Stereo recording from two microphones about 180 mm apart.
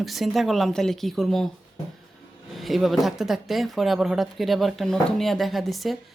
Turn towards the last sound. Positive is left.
turn(degrees=0)  # may be behind; listen again after turning